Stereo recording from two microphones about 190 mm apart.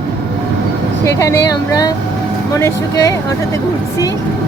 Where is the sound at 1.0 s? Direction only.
15° left (ahead or behind).